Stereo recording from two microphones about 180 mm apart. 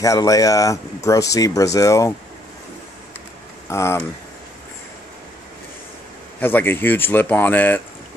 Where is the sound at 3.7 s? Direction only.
15° left (ahead or behind).